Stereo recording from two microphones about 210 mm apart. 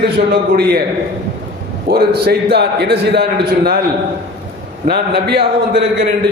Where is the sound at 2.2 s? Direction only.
50° right (ahead or behind).